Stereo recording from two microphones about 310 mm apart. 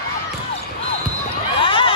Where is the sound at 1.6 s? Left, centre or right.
Centre.